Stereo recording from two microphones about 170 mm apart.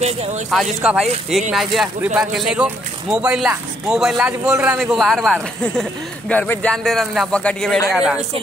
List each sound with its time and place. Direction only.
0.0 s speech: 40° right (ahead or behind)
0.5 s speech: centre (ahead or behind)
4.9 s speech: centre (ahead or behind)